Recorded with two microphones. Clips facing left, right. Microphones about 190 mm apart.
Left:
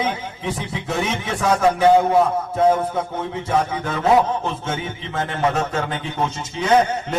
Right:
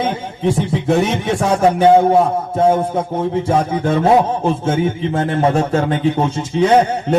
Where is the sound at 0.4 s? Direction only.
50° right (ahead or behind).